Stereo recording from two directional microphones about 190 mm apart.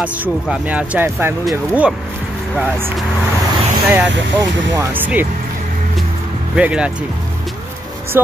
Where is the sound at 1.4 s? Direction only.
Centre (ahead or behind).